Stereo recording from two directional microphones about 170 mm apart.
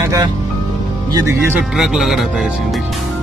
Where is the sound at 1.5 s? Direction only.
5° right (ahead or behind).